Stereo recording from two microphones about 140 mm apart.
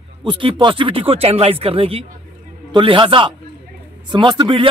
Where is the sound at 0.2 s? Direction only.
35° right (ahead or behind).